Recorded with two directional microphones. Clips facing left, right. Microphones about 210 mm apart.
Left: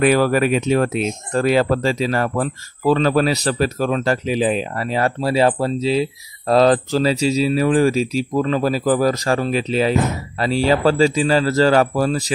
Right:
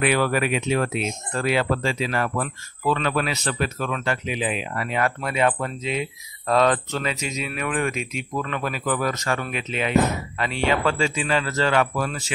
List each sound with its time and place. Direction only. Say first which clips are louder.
0.0 s speech: left 6 dB; 40° left (ahead or behind)